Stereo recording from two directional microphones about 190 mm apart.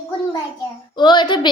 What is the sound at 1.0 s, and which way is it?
Speech, 25° left (ahead or behind).